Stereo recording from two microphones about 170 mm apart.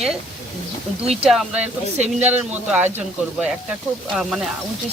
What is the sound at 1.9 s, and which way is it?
Speech, 40° right (ahead or behind).